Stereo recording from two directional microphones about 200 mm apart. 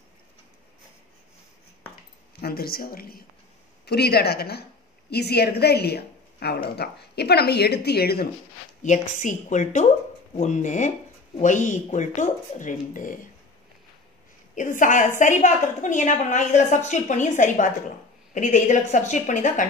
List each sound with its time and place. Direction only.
2.4 s a woman's voice: 50° left (ahead or behind)
8.8 s a woman's voice: 40° left (ahead or behind)
14.5 s a woman's voice: 40° left (ahead or behind)